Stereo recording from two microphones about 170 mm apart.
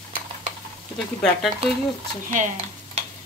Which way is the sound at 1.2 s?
Centre (ahead or behind).